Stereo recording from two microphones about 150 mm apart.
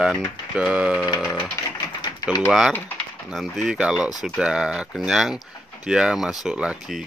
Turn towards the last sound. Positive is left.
turn(degrees=-5)  # may be behind; listen again after turning